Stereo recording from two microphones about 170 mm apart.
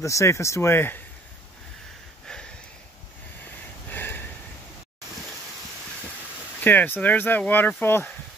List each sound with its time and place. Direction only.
0.0 s speech: 20° left (ahead or behind)
3.9 s a sound: 10° left (ahead or behind)
6.6 s speech: 10° left (ahead or behind)